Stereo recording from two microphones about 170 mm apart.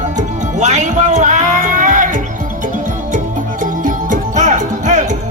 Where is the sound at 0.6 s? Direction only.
45° right (ahead or behind).